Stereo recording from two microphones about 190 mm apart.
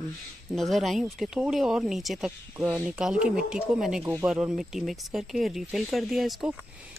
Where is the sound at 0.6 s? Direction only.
Centre (ahead or behind).